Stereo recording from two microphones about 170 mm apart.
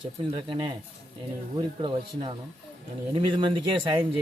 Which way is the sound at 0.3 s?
30° right (ahead or behind).